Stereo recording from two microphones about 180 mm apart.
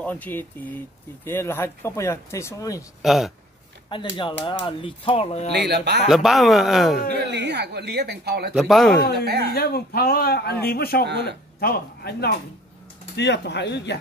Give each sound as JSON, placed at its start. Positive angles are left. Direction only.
{"t": 0.0, "sound": "speech", "side_deg": 10}
{"t": 3.0, "sound": "speech", "side_deg": 0}
{"t": 3.9, "sound": "speech", "side_deg": 25}
{"t": 5.5, "sound": "speech", "side_deg": -65}
{"t": 6.0, "sound": "speech", "side_deg": 0}
{"t": 7.1, "sound": "speech", "side_deg": -70}
{"t": 8.5, "sound": "speech", "side_deg": 0}
{"t": 9.2, "sound": "speech", "side_deg": -60}
{"t": 9.5, "sound": "a man's voice", "side_deg": 60}
{"t": 11.1, "sound": "speech", "side_deg": -70}
{"t": 11.6, "sound": "speech", "side_deg": 60}
{"t": 13.1, "sound": "speech", "side_deg": 75}